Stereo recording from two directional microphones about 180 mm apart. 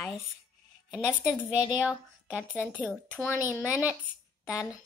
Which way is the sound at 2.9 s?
5° left (ahead or behind).